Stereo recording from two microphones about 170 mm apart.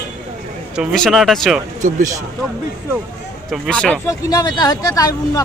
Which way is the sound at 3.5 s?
5° left (ahead or behind).